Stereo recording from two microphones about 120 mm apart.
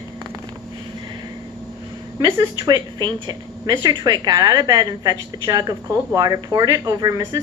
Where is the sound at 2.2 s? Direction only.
35° right (ahead or behind).